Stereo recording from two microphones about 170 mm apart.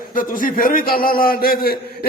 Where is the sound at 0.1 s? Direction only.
55° left (ahead or behind).